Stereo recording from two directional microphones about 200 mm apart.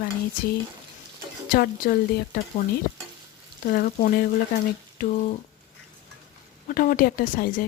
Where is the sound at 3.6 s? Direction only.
45° left (ahead or behind).